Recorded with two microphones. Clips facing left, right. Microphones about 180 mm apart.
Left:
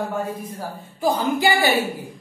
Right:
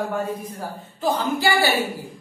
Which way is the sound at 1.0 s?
15° left (ahead or behind).